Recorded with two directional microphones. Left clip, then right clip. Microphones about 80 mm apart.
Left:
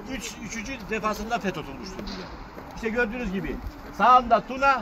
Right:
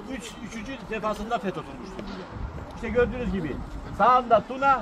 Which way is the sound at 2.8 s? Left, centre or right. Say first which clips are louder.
Right 2 dB; left.